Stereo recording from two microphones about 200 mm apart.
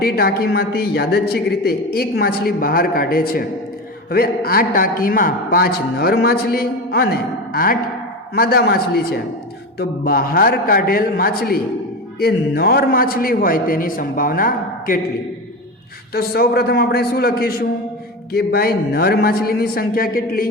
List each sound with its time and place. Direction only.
0.0 s a man's voice: 50° left (ahead or behind)
16.1 s a man's voice: 50° left (ahead or behind)